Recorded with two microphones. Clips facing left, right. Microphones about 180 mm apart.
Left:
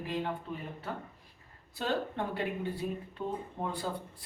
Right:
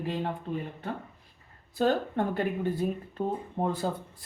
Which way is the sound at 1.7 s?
50° right (ahead or behind).